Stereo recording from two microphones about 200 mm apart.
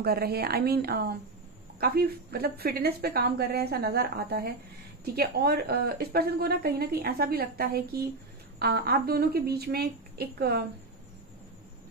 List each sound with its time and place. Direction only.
0.0 s a woman's voice: 50° right (ahead or behind)